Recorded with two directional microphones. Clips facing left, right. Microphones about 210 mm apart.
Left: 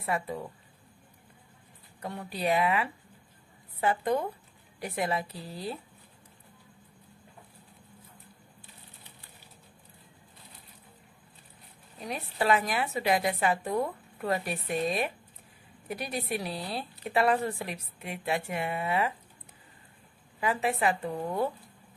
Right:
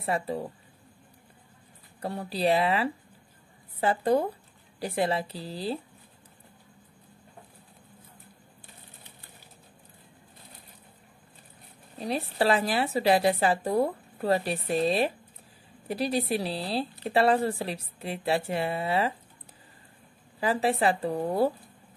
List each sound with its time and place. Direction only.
0.0 s speech: 30° right (ahead or behind)
2.0 s speech: 35° right (ahead or behind)
12.0 s speech: 30° right (ahead or behind)
20.3 s speech: 35° right (ahead or behind)